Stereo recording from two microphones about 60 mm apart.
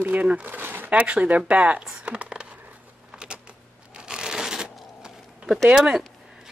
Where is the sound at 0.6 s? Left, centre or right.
Right.